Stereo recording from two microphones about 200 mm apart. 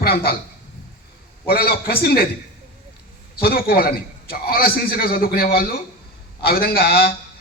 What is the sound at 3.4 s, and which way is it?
A man's voice, 50° left (ahead or behind).